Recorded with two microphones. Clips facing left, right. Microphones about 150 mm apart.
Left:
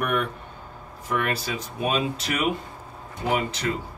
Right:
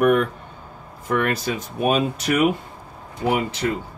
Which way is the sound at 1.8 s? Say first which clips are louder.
Right 5 dB; 50° right (ahead or behind).